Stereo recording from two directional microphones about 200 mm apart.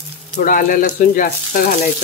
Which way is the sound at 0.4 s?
40° left (ahead or behind).